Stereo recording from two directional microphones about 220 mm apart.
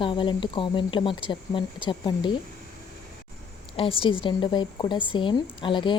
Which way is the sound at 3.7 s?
25° left (ahead or behind).